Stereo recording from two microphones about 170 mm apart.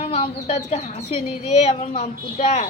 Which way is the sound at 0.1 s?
35° left (ahead or behind).